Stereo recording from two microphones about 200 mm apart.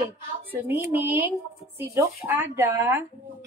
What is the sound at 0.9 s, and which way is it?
Speech, 10° right (ahead or behind).